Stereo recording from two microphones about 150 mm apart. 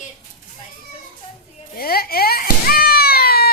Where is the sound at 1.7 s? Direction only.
90° left.